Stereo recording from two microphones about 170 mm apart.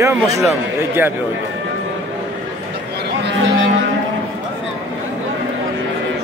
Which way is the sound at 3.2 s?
90° right.